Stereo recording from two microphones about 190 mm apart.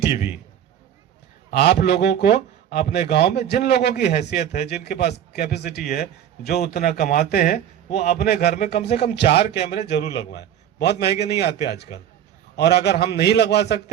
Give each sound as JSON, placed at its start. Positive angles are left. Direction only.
{"t": 1.5, "sound": "a man's voice", "side_deg": 60}